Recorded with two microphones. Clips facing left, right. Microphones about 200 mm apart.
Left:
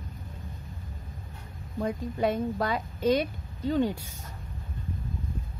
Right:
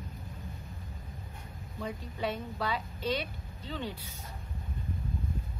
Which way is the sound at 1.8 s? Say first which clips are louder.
Left 8 dB; 50° left (ahead or behind).